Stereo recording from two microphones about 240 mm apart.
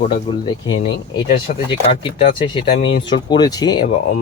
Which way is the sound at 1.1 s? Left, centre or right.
Left.